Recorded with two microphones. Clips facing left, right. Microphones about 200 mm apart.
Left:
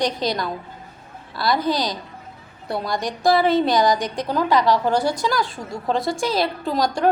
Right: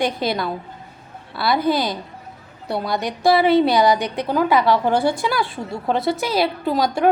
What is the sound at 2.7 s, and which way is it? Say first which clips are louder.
A woman's voice: right 2 dB; centre (ahead or behind).